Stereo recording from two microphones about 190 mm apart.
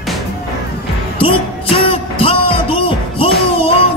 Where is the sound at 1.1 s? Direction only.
30° left (ahead or behind).